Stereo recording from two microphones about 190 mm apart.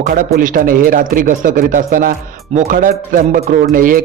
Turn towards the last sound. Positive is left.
turn(degrees=-45)  # may be behind; listen again after turning